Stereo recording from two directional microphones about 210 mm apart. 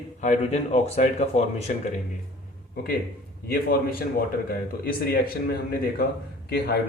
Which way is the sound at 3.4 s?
45° left (ahead or behind).